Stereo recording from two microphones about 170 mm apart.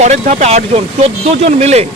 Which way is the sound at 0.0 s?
40° right (ahead or behind).